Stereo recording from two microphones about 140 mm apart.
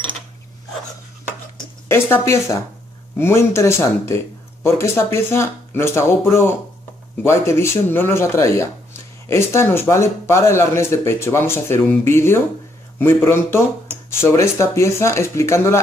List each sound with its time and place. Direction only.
1.9 s speech: 20° left (ahead or behind)